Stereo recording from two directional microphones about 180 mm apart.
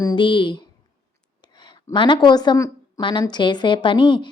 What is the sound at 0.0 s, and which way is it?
A woman's voice, 25° left (ahead or behind).